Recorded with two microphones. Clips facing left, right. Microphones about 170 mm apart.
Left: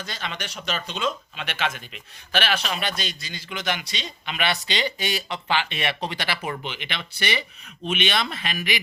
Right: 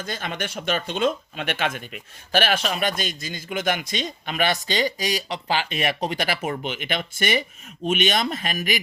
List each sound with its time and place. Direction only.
0.0 s speech: 50° right (ahead or behind)